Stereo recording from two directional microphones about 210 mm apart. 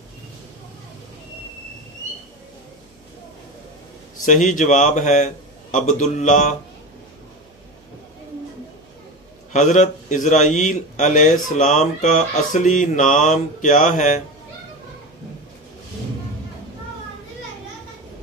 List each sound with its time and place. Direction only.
4.2 s a man's voice: 35° left (ahead or behind)
9.5 s a man's voice: 35° left (ahead or behind)